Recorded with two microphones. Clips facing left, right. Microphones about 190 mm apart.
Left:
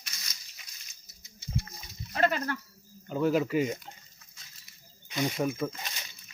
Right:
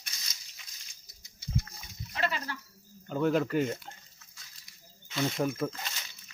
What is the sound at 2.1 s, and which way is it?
Speech, 50° left (ahead or behind).